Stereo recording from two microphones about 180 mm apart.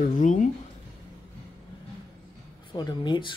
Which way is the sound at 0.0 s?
45° left (ahead or behind).